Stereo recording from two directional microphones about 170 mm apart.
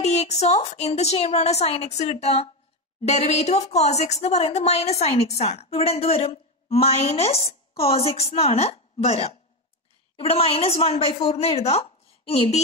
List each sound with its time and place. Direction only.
0.0 s a woman's voice: 40° left (ahead or behind)